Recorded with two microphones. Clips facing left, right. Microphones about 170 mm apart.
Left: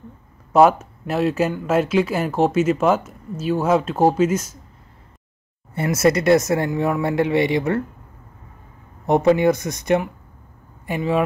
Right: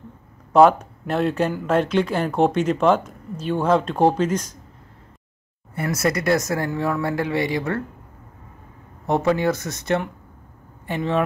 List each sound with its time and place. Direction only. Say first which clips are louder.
0.5 s speech: even; 5° left (ahead or behind)
5.8 s speech: left 5 dB; 25° left (ahead or behind)
9.0 s speech: left 4 dB; 20° left (ahead or behind)